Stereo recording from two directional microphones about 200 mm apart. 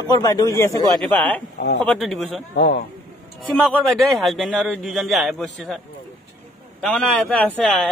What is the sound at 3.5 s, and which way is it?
A man's voice, centre (ahead or behind).